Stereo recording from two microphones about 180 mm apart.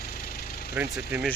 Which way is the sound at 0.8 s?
10° right (ahead or behind).